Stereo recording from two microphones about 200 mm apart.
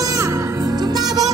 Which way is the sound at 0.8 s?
20° right (ahead or behind).